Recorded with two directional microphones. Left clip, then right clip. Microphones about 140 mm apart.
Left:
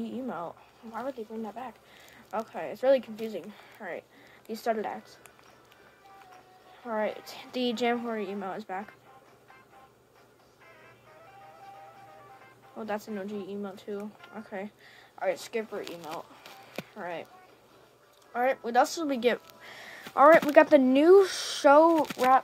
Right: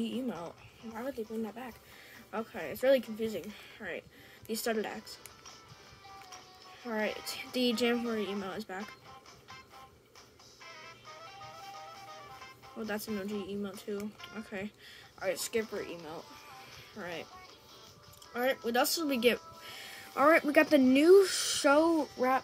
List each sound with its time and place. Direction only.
0.0 s a woman's voice: 40° right (ahead or behind)
6.9 s a woman's voice: 35° right (ahead or behind)
10.6 s music: 25° right (ahead or behind)
12.7 s a woman's voice: 40° right (ahead or behind)
18.3 s speech: 40° right (ahead or behind)
20.2 s speech: 55° right (ahead or behind)